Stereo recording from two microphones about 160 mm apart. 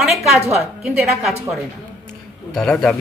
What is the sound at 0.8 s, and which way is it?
Speech, centre (ahead or behind).